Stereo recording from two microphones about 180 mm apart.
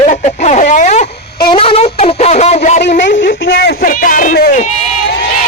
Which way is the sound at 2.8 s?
75° left (ahead or behind).